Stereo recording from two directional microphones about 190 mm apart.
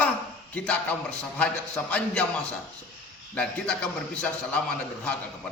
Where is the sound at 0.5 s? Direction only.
5° left (ahead or behind).